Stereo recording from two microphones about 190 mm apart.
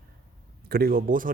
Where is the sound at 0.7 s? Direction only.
50° right (ahead or behind).